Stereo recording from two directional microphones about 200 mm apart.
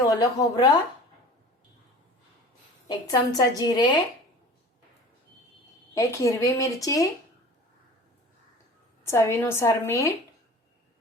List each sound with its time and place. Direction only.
0.0 s a woman's voice: 15° left (ahead or behind)
2.8 s a woman's voice: 20° left (ahead or behind)
5.9 s a woman's voice: 15° left (ahead or behind)
9.0 s a woman's voice: 15° left (ahead or behind)